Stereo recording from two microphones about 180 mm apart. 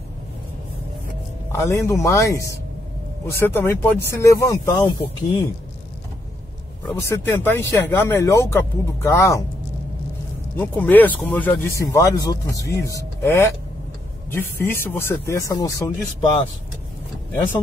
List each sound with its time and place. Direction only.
1.6 s speech: 15° left (ahead or behind)
6.9 s speech: 15° left (ahead or behind)
10.5 s speech: 10° left (ahead or behind)
16.2 s speech: 30° left (ahead or behind)